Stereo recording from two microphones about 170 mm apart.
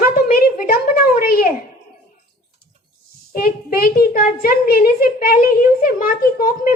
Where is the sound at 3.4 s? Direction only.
65° left (ahead or behind).